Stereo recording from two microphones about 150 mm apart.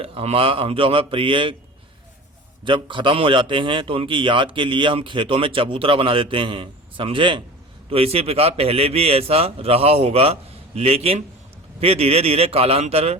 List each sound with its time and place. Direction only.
0.0 s a man's voice: 40° right (ahead or behind)
2.6 s a man's voice: 35° right (ahead or behind)